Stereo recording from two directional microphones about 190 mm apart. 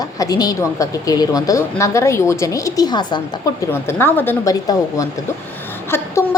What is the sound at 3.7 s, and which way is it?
A woman's voice, 10° left (ahead or behind).